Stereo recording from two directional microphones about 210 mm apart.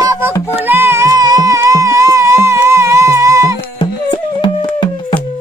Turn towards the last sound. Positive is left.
turn(degrees=25)  # may be behind; listen again after turning